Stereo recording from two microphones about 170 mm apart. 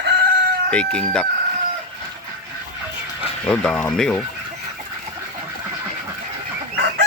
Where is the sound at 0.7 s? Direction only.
5° left (ahead or behind).